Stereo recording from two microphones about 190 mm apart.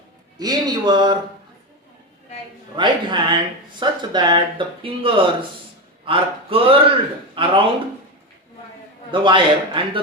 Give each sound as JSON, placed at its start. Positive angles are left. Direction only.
{"t": 0.3, "sound": "speech", "side_deg": -20}
{"t": 2.7, "sound": "speech", "side_deg": -25}
{"t": 9.2, "sound": "speech", "side_deg": -25}